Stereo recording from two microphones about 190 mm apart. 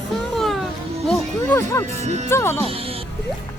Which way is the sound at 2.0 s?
35° right (ahead or behind).